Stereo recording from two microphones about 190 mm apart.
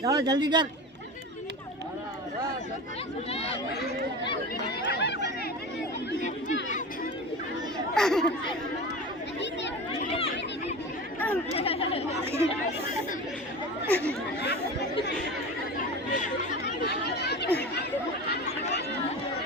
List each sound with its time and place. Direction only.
0.0 s speech: 20° right (ahead or behind)
4.9 s chatter: 65° left (ahead or behind)
6.2 s crowd: 40° left (ahead or behind)
7.9 s speech: 5° left (ahead or behind)
11.5 s speech: 30° left (ahead or behind)
13.9 s speech: 5° left (ahead or behind)
14.4 s speech: 60° left (ahead or behind)
16.8 s chatter: 60° left (ahead or behind)